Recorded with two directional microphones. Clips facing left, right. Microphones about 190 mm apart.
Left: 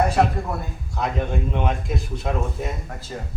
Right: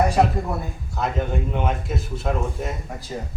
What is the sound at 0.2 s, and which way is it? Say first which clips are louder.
A man's voice: right 1 dB; 5° right (ahead or behind).